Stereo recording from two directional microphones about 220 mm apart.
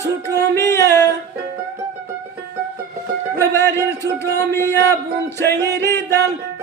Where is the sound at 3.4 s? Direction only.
10° left (ahead or behind).